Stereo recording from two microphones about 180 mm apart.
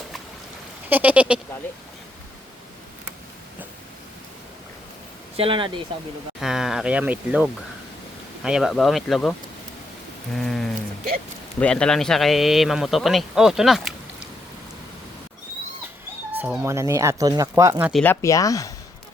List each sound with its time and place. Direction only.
0.9 s speech: 10° right (ahead or behind)
5.4 s speech: 30° right (ahead or behind)
6.4 s a man's voice: centre (ahead or behind)
10.3 s a man's voice: centre (ahead or behind)
16.4 s speech: 15° right (ahead or behind)
18.0 s speech: 15° left (ahead or behind)